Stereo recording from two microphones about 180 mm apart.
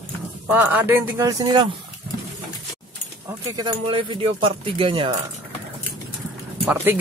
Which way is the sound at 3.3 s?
20° right (ahead or behind).